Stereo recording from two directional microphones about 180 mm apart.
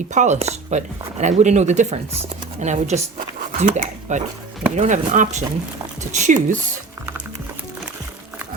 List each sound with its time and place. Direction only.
0.1 s speech: 40° right (ahead or behind)